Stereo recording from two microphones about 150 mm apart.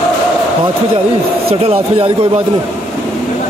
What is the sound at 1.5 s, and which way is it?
Speech, 40° right (ahead or behind).